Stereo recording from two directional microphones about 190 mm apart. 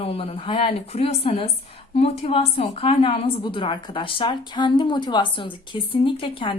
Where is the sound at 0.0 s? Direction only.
30° left (ahead or behind).